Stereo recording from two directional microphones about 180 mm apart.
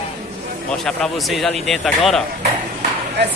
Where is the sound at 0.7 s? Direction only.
5° left (ahead or behind).